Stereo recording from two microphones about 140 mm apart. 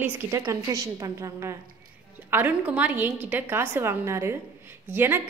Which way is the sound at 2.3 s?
10° right (ahead or behind).